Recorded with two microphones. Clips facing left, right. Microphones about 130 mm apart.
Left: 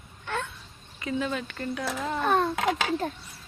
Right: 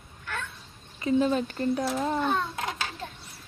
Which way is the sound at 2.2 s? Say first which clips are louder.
Left 3 dB; 60° left (ahead or behind).